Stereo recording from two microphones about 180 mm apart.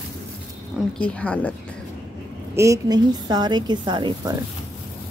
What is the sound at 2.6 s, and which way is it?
A woman's voice, 20° right (ahead or behind).